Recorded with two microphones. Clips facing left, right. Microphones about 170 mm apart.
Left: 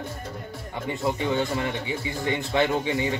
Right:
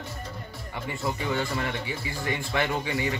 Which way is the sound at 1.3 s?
20° left (ahead or behind).